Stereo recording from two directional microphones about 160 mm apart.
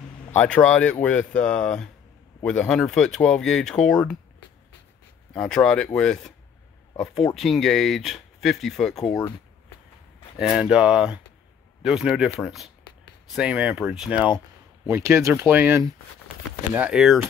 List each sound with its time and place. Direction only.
0.4 s speech: 10° left (ahead or behind)
5.3 s speech: 5° left (ahead or behind)
7.3 s speech: centre (ahead or behind)
10.4 s speech: 5° right (ahead or behind)
14.9 s speech: 15° right (ahead or behind)